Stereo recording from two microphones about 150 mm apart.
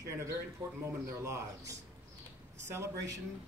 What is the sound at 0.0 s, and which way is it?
Speech, 20° right (ahead or behind).